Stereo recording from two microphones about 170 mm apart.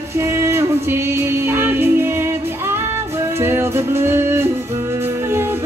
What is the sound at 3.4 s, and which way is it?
Music, 15° right (ahead or behind).